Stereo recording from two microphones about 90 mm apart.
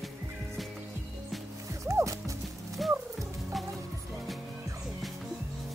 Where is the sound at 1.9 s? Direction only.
35° right (ahead or behind).